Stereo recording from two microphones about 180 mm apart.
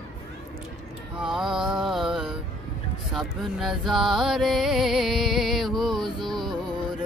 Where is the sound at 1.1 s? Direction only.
5° right (ahead or behind).